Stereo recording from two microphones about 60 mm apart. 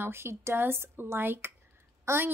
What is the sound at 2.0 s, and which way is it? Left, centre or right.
Speech, right.